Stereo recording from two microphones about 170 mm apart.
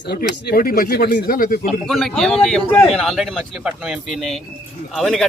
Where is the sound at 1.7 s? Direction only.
5° left (ahead or behind).